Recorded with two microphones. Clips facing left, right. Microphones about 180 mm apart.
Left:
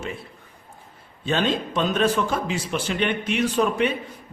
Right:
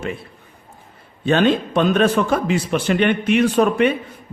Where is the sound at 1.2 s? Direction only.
60° right (ahead or behind).